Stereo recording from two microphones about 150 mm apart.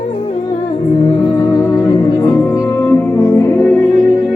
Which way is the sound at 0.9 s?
35° left (ahead or behind).